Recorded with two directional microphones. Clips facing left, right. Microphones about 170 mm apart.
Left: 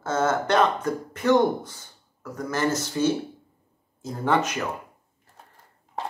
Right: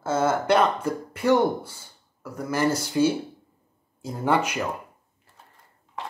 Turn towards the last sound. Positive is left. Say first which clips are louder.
# even
turn(degrees=-10)  # may be behind; listen again after turning